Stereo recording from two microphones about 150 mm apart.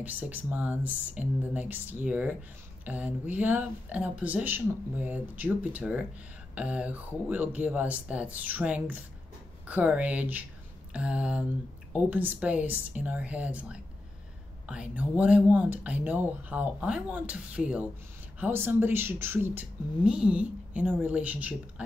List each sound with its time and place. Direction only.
0.0 s speech: 10° right (ahead or behind)